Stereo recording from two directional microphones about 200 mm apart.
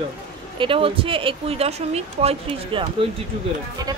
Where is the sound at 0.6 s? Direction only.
25° right (ahead or behind).